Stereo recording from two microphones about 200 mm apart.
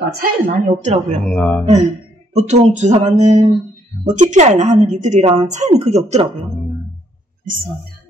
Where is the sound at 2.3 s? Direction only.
35° right (ahead or behind).